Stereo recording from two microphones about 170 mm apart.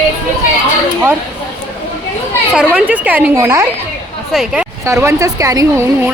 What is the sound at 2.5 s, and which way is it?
A woman's voice, 5° right (ahead or behind).